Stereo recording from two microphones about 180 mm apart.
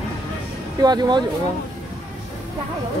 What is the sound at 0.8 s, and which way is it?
Speech, 25° right (ahead or behind).